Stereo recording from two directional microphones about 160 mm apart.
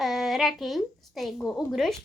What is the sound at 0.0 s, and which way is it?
A woman's voice, centre (ahead or behind).